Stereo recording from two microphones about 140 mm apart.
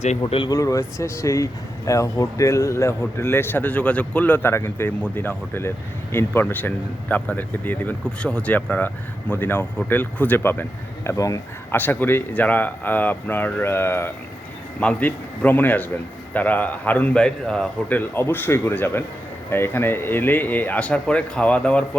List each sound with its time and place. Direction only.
0.3 s speech: 40° left (ahead or behind)
0.5 s speech: 25° left (ahead or behind)